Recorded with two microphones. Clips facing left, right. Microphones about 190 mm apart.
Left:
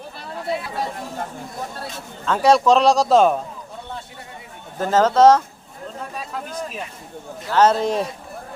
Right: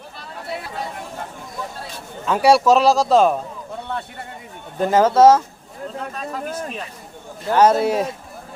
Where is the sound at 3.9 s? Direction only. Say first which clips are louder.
Right 7 dB; 60° right (ahead or behind).